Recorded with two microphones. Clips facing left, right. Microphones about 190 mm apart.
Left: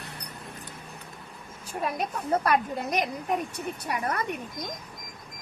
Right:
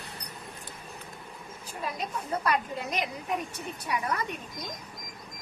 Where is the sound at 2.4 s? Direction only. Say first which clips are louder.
Left 3 dB; 50° left (ahead or behind).